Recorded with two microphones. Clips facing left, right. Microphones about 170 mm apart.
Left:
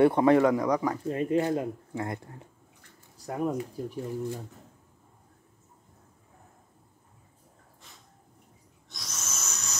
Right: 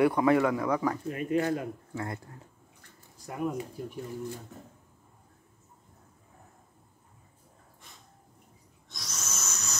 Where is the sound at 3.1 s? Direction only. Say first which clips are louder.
Left 5 dB; 35° left (ahead or behind).